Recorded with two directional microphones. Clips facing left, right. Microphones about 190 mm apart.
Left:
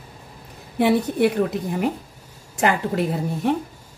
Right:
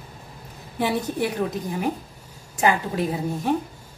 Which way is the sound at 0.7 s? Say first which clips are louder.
Left 6 dB; 65° left (ahead or behind).